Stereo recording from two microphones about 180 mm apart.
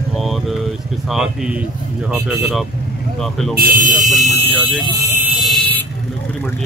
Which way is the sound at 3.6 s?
50° right (ahead or behind).